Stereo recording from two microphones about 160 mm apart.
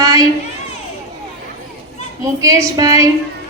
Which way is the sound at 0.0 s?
20° right (ahead or behind).